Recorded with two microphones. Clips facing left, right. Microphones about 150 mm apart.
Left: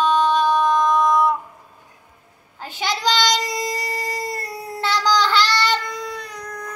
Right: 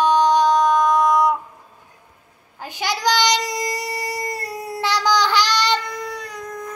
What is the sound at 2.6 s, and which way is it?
Child singing, 10° right (ahead or behind).